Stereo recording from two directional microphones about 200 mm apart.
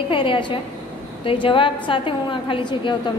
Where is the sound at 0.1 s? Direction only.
25° left (ahead or behind).